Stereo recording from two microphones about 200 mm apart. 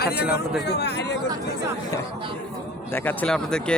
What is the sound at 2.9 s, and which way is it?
Speech, 10° left (ahead or behind).